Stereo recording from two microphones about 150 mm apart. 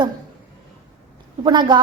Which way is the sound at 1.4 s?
30° right (ahead or behind).